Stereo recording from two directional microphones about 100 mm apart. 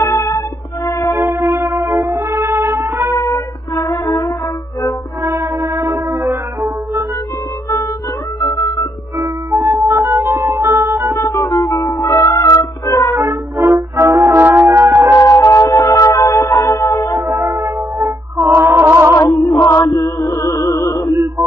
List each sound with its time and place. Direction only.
0.0 s music: 30° left (ahead or behind)
1.1 s music: 35° right (ahead or behind)
3.2 s music: 35° left (ahead or behind)
5.2 s music: 35° right (ahead or behind)
8.4 s music: 30° left (ahead or behind)
9.2 s music: 30° right (ahead or behind)
11.1 s music: 35° left (ahead or behind)
13.1 s brass instrument: 35° right (ahead or behind)
14.3 s music: 20° right (ahead or behind)
15.1 s music: 35° left (ahead or behind)
17.2 s music: 25° right (ahead or behind)
19.1 s chant: 35° left (ahead or behind)
20.2 s music: 30° left (ahead or behind)